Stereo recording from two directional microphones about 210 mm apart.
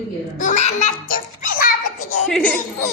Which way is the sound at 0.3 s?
35° left (ahead or behind).